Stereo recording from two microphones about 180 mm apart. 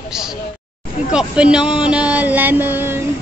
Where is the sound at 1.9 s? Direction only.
5° right (ahead or behind).